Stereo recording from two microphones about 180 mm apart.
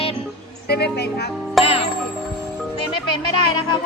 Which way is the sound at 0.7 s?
65° left (ahead or behind).